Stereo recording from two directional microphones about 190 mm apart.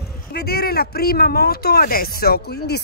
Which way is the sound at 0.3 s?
55° left (ahead or behind).